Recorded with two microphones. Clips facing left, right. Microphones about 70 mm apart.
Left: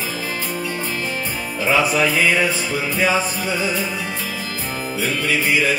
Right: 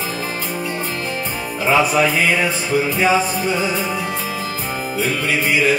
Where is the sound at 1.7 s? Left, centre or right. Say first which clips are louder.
Right 2 dB; right.